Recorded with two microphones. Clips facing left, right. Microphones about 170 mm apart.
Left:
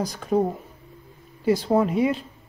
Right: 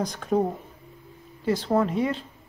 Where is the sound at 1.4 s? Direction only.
10° left (ahead or behind).